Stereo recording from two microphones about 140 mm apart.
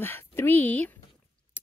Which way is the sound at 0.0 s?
15° left (ahead or behind).